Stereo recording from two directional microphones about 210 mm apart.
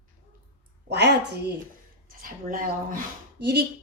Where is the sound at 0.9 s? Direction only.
55° right (ahead or behind).